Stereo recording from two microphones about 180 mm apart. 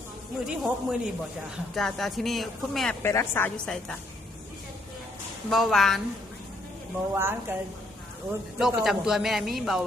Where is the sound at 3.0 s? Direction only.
15° left (ahead or behind).